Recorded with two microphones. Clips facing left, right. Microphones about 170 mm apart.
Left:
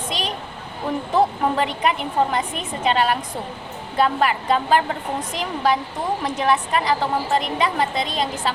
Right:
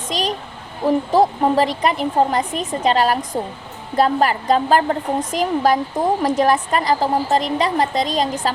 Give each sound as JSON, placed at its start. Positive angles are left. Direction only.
{"t": 0.1, "sound": "a woman's voice", "side_deg": -40}